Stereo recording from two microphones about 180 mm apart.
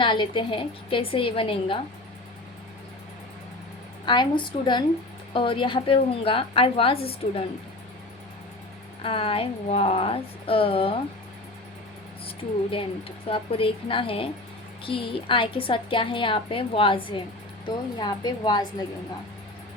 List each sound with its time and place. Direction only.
0.0 s a woman's voice: 25° left (ahead or behind)
4.0 s a woman's voice: 25° left (ahead or behind)
9.0 s a woman's voice: 30° left (ahead or behind)
13.2 s a woman's voice: 30° left (ahead or behind)